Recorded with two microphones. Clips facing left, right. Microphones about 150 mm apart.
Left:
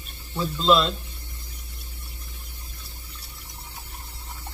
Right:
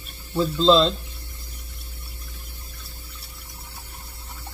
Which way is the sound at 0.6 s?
30° right (ahead or behind).